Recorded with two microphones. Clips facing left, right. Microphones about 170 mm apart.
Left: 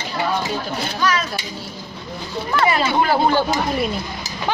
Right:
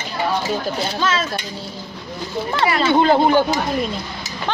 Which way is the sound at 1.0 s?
25° right (ahead or behind).